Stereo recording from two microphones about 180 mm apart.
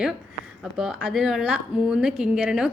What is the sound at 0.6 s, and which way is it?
A woman's voice, centre (ahead or behind).